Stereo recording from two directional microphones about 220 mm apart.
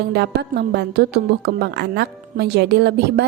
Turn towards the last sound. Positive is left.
turn(degrees=-50)  # may be behind; listen again after turning